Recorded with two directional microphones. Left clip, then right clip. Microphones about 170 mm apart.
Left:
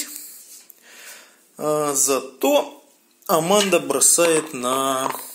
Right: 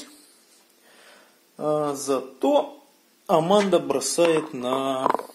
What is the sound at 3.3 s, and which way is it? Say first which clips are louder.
Speech: left 2 dB; 5° left (ahead or behind).